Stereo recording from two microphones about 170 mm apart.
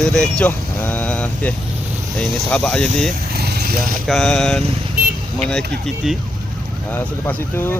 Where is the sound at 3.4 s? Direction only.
65° right (ahead or behind).